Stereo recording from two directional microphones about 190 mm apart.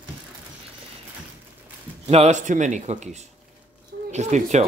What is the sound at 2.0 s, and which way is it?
Speech, 35° right (ahead or behind).